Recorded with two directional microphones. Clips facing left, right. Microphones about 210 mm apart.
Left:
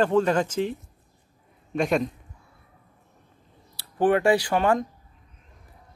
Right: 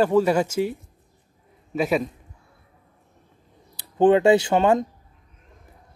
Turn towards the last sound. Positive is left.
turn(degrees=-25)  # may be behind; listen again after turning